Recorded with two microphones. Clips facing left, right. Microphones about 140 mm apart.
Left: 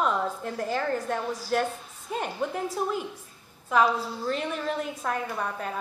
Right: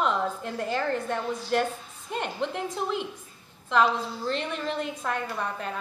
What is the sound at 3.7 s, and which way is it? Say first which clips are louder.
A woman's voice: even; 10° left (ahead or behind).